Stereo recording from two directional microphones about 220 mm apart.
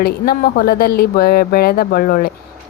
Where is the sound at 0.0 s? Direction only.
45° left (ahead or behind).